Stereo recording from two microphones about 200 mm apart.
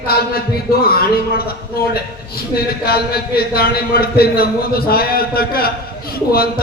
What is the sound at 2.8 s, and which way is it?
A man's voice, 50° left (ahead or behind).